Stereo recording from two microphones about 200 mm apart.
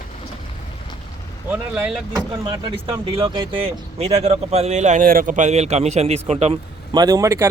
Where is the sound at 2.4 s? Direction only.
25° right (ahead or behind).